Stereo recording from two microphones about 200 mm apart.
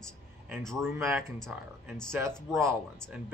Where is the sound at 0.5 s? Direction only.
5° left (ahead or behind).